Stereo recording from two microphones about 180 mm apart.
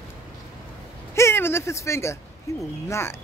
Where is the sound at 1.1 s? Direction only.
15° left (ahead or behind).